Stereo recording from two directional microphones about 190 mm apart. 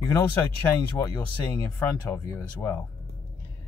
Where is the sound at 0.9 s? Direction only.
15° left (ahead or behind).